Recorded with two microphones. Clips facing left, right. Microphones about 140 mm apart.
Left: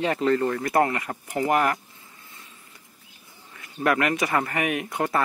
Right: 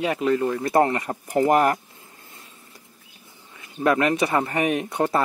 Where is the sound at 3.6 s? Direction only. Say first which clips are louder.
Right 3 dB; 20° right (ahead or behind).